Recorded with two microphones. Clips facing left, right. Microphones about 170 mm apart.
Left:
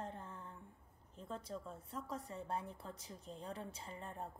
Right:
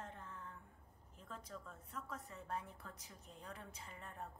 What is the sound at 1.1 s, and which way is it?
A woman's voice, 30° left (ahead or behind).